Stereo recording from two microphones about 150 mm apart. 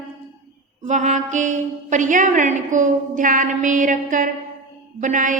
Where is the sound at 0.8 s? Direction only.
55° right (ahead or behind).